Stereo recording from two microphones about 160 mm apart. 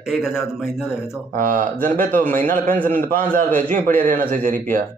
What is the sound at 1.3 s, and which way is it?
Speech, 55° right (ahead or behind).